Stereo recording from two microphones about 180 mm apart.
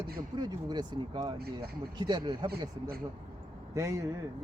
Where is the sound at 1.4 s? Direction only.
60° right (ahead or behind).